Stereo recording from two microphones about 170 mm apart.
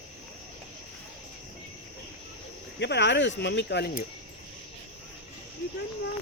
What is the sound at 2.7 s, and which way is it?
Speech, 90° left.